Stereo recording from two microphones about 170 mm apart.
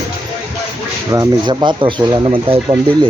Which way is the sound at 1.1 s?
25° right (ahead or behind).